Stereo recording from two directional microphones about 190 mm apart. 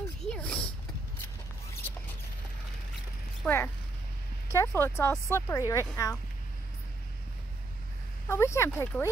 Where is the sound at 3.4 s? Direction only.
10° left (ahead or behind).